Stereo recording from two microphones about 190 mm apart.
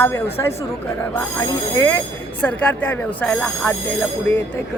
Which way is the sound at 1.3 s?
15° left (ahead or behind).